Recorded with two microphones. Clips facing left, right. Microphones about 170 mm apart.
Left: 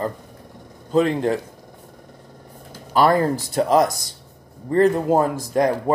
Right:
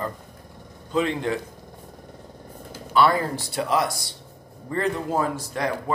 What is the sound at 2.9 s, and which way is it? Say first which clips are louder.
Speech: left 3 dB; 45° left (ahead or behind).